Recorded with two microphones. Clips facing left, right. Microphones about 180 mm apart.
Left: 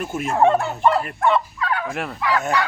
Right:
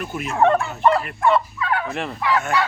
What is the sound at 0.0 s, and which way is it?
Fowl, 45° left (ahead or behind).